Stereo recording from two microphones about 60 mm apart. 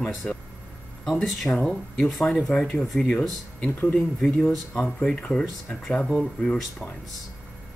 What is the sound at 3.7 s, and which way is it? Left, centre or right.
Speech, left.